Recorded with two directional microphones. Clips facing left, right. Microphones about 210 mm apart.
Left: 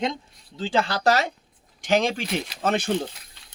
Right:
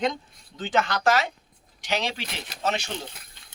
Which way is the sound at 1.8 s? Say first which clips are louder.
Left 7 dB; 50° left (ahead or behind).